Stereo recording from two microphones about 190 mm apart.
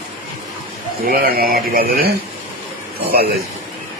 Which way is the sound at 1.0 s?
50° right (ahead or behind).